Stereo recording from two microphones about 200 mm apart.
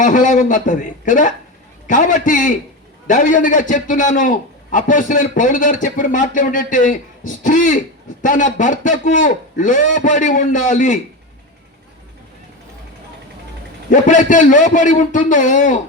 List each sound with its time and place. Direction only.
0.0 s a man's voice: 40° left (ahead or behind)
13.9 s a man's voice: 40° left (ahead or behind)